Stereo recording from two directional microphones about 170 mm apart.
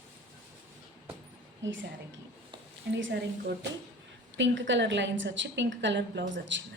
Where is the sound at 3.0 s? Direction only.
90° right.